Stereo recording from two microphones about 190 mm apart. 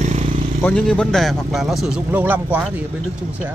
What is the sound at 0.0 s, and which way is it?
Vehicle, 40° right (ahead or behind).